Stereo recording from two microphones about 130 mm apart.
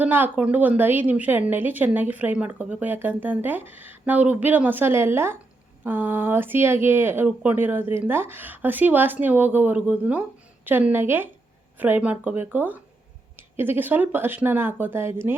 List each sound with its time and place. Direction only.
0.0 s a woman's voice: 15° right (ahead or behind)